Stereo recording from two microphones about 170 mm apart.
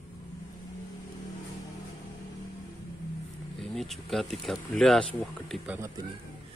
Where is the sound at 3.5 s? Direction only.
Centre (ahead or behind).